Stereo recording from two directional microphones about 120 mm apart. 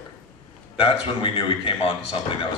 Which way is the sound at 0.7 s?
50° left (ahead or behind).